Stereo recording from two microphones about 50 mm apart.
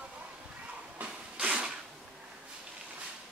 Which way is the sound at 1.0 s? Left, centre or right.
Right.